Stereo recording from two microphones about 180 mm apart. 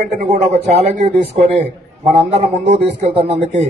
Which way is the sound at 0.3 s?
40° right (ahead or behind).